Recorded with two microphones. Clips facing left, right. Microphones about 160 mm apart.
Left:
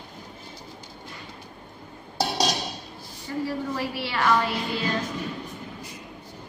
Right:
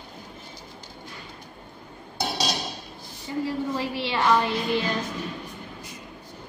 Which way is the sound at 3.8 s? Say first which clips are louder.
Right 1 dB; 20° right (ahead or behind).